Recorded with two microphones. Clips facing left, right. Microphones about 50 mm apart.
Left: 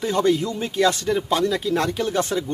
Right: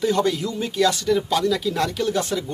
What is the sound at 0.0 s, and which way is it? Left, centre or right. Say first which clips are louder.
Speech: left 1 dB; left.